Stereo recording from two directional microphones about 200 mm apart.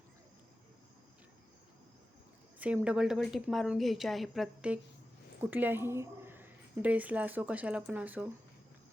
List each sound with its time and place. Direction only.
2.6 s a woman's voice: 5° right (ahead or behind)